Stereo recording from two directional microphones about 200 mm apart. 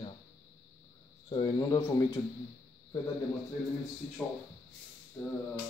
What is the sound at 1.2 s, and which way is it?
Speech, 20° left (ahead or behind).